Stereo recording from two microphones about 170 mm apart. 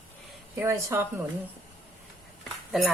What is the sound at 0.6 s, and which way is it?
Speech, 15° right (ahead or behind).